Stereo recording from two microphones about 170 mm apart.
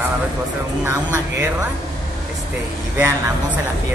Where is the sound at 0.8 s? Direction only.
15° right (ahead or behind).